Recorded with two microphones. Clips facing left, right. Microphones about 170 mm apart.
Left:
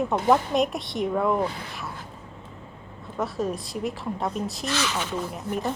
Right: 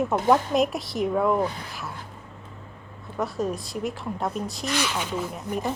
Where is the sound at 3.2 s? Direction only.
Centre (ahead or behind).